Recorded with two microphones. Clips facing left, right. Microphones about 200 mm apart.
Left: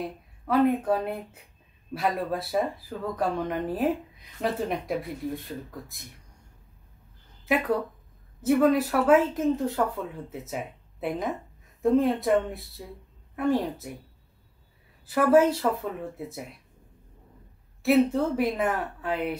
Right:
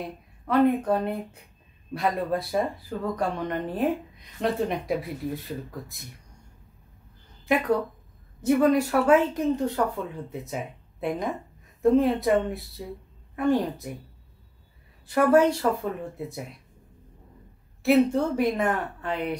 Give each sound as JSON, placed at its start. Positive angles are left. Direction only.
{"t": 0.5, "sound": "speech", "side_deg": 5}
{"t": 8.4, "sound": "speech", "side_deg": 0}
{"t": 15.0, "sound": "speech", "side_deg": 5}
{"t": 17.8, "sound": "speech", "side_deg": 0}